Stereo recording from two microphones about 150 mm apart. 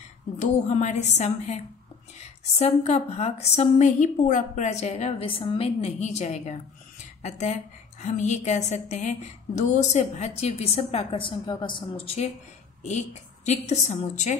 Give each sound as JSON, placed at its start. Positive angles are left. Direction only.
{"t": 0.4, "sound": "speech", "side_deg": 50}
{"t": 13.5, "sound": "speech", "side_deg": 45}